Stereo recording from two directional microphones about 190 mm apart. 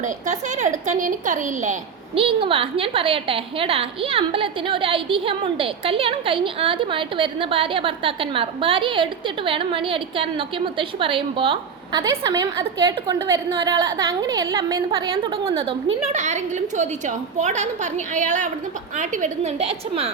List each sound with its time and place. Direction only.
0.0 s a woman's voice: 40° right (ahead or behind)
2.1 s a woman's voice: 30° right (ahead or behind)